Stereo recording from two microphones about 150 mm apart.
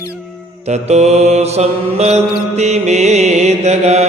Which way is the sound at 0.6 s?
50° right (ahead or behind).